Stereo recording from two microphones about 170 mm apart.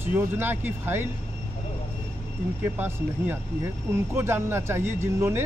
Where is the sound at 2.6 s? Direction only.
10° right (ahead or behind).